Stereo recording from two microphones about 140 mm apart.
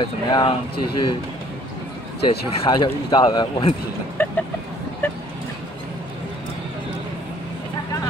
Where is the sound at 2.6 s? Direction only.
35° left (ahead or behind).